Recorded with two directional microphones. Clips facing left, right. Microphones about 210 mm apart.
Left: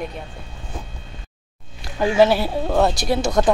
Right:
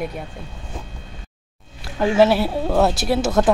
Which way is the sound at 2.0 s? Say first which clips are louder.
Even; centre (ahead or behind).